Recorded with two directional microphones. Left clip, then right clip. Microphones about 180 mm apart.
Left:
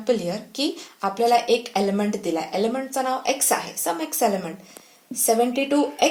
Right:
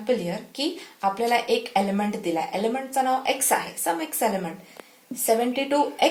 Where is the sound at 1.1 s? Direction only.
45° left (ahead or behind).